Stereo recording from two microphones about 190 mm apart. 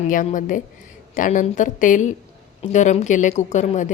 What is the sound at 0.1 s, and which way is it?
A woman's voice, 45° left (ahead or behind).